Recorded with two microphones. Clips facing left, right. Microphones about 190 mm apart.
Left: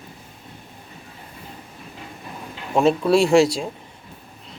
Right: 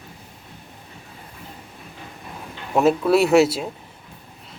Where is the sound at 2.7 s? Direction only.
5° right (ahead or behind).